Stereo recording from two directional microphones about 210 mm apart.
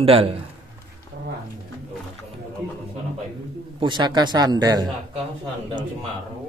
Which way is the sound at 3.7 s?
20° right (ahead or behind).